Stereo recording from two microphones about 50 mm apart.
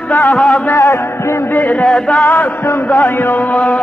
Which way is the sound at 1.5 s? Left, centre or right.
Left.